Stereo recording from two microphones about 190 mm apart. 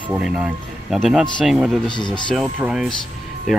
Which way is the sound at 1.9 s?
25° left (ahead or behind).